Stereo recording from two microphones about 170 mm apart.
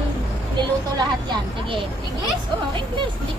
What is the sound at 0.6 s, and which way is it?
A woman's voice, 25° right (ahead or behind).